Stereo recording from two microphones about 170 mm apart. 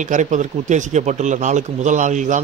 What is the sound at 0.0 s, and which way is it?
Speech, 45° right (ahead or behind).